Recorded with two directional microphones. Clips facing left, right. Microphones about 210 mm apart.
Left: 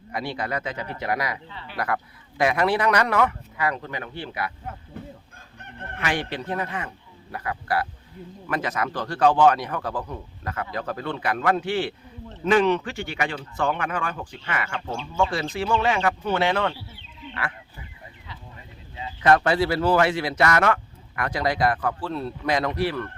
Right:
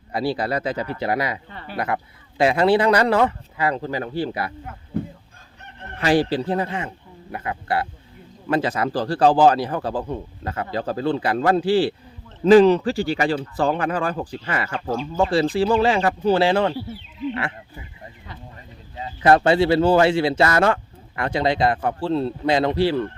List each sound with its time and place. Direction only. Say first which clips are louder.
0.1 s a man's voice: right 6 dB; 35° right (ahead or behind)
1.5 s speech: right 3 dB; 50° right (ahead or behind)
1.7 s a man's voice: right 2 dB; 25° right (ahead or behind)
6.0 s a man's voice: right 9 dB; 35° right (ahead or behind)
17.3 s frog: right 5 dB; 25° right (ahead or behind)
19.2 s speech: right 4 dB; 30° right (ahead or behind)